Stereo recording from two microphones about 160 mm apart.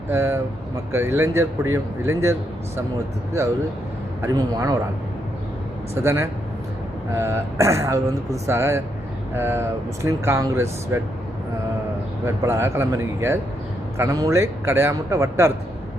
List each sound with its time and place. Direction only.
0.1 s a man's voice: 15° right (ahead or behind)
4.2 s speech: 25° right (ahead or behind)
5.9 s a man's voice: 15° right (ahead or behind)
12.2 s a man's voice: 15° right (ahead or behind)